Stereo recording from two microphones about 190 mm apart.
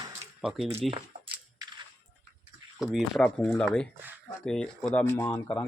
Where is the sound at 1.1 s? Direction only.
45° right (ahead or behind).